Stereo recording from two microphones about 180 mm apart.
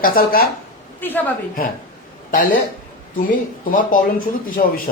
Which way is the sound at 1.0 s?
10° left (ahead or behind).